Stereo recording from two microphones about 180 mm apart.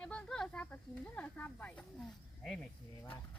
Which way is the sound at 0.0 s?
5° left (ahead or behind).